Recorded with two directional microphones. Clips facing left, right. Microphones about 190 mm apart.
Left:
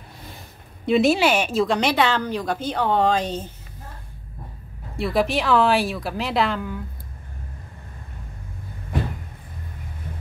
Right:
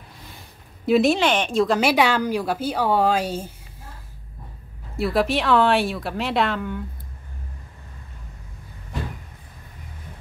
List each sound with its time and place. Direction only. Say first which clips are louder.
0.8 s a woman's voice: even; centre (ahead or behind)
4.9 s speech: even; centre (ahead or behind)